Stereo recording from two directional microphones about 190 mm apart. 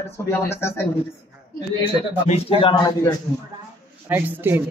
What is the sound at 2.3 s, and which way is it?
Speech, 30° left (ahead or behind).